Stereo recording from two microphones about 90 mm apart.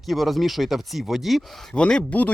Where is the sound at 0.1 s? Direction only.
Centre (ahead or behind).